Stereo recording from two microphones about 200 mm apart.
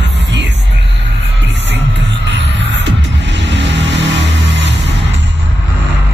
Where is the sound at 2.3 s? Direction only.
60° right (ahead or behind).